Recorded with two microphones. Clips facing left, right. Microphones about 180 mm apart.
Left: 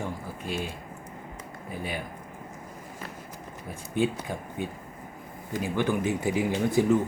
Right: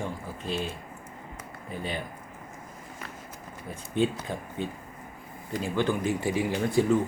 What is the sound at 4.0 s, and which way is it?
Speech, 10° left (ahead or behind).